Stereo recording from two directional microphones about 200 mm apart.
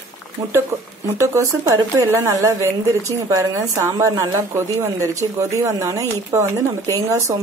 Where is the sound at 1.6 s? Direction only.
15° right (ahead or behind).